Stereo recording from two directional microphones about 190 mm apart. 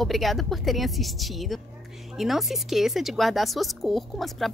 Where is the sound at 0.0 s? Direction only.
Centre (ahead or behind).